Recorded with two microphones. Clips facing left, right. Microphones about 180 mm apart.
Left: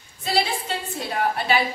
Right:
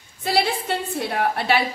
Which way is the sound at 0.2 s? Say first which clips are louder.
Right 2 dB; 60° right (ahead or behind).